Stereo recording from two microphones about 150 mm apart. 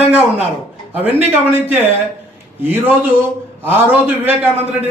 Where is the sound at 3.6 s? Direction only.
10° right (ahead or behind).